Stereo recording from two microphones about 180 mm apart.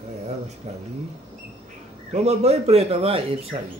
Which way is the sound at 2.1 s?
35° right (ahead or behind).